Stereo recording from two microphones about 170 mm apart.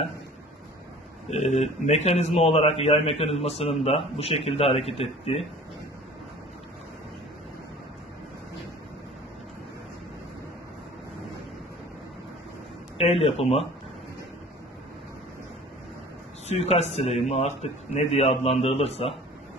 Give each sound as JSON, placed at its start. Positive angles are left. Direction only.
{"t": 1.3, "sound": "a man's voice", "side_deg": 40}
{"t": 12.9, "sound": "a man's voice", "side_deg": 35}
{"t": 16.4, "sound": "a man's voice", "side_deg": 40}